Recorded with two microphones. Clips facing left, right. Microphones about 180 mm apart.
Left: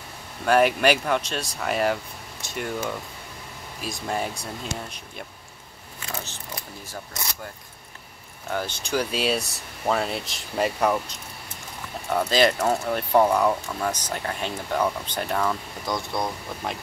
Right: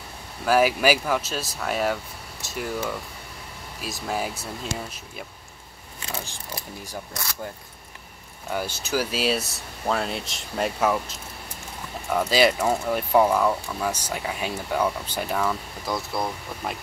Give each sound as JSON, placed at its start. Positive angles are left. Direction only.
{"t": 0.5, "sound": "speech", "side_deg": -5}
{"t": 6.1, "sound": "speech", "side_deg": -10}
{"t": 8.5, "sound": "speech", "side_deg": -10}
{"t": 12.3, "sound": "speech", "side_deg": -10}